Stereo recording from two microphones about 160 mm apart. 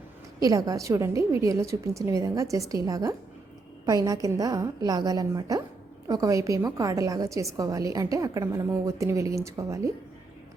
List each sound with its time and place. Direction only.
0.4 s a woman's voice: 20° right (ahead or behind)